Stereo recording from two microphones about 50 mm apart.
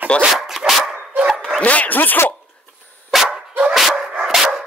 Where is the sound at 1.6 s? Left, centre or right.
Left.